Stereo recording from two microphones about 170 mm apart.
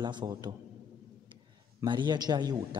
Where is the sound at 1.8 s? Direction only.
25° right (ahead or behind).